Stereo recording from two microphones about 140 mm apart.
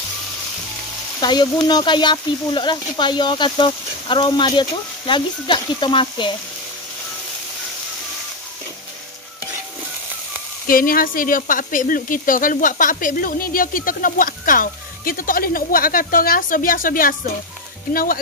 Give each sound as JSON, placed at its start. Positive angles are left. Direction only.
{"t": 1.2, "sound": "speech", "side_deg": 30}
{"t": 10.7, "sound": "speech", "side_deg": 90}